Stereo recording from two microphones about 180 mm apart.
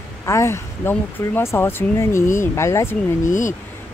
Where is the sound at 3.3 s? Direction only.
45° left (ahead or behind).